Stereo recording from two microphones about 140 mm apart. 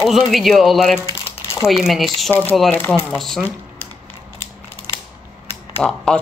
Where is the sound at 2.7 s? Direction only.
15° left (ahead or behind).